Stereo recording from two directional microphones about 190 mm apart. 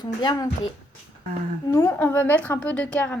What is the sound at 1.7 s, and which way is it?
A woman's voice, 15° left (ahead or behind).